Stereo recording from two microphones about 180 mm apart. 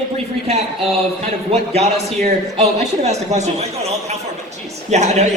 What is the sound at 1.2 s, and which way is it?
A man's voice, 35° right (ahead or behind).